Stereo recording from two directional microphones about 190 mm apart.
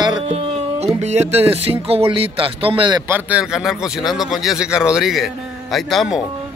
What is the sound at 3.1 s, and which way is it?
Speech, 5° right (ahead or behind).